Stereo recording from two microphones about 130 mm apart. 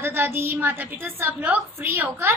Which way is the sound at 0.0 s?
15° right (ahead or behind).